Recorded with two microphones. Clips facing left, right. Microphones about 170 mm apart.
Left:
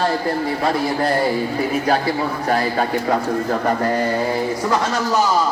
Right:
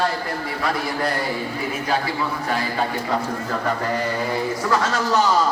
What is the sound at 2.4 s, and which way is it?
A man's voice, 45° left (ahead or behind).